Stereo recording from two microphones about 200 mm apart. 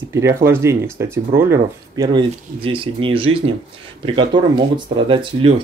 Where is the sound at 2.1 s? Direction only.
25° right (ahead or behind).